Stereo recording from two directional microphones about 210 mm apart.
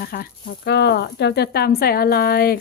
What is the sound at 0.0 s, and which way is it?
A woman's voice, 45° left (ahead or behind).